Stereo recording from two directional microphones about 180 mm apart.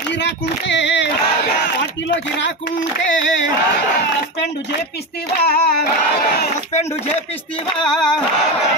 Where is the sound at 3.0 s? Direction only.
90° left.